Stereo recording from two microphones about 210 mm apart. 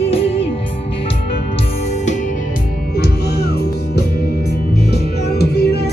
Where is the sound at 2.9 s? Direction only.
50° left (ahead or behind).